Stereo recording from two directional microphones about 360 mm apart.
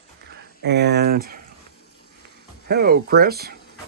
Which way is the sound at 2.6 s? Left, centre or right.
Right.